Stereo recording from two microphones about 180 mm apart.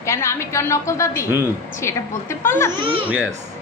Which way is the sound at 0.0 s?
15° left (ahead or behind).